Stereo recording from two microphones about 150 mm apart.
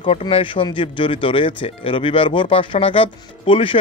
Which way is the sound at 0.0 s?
35° left (ahead or behind).